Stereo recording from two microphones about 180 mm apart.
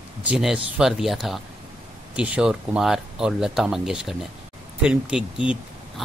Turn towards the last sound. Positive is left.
turn(degrees=-5)  # may be behind; listen again after turning